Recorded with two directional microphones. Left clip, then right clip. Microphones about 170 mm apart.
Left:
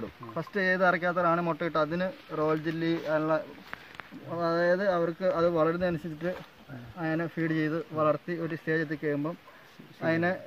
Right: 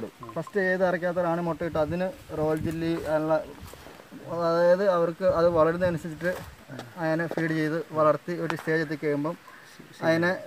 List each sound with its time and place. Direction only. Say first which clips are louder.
0.6 s speech: right 1 dB; 15° right (ahead or behind)